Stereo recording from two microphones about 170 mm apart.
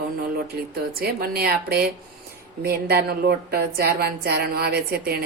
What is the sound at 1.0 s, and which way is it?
A woman's voice, 60° right (ahead or behind).